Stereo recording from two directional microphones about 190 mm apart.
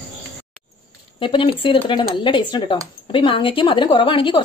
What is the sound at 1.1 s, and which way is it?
A woman's voice, 25° left (ahead or behind).